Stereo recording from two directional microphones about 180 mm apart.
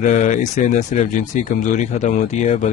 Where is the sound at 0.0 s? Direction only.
45° left (ahead or behind).